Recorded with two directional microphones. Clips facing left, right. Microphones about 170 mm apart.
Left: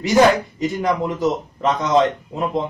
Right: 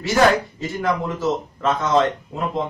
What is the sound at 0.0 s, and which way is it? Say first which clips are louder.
A man's voice: left 3 dB; 15° left (ahead or behind).